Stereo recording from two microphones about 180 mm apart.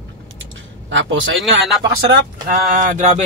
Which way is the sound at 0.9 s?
90° right.